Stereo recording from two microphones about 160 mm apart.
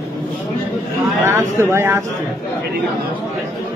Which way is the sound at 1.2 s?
15° right (ahead or behind).